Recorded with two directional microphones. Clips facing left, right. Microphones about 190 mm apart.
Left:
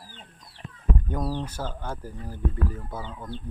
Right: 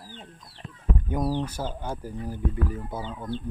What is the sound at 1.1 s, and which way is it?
Speech, 15° right (ahead or behind).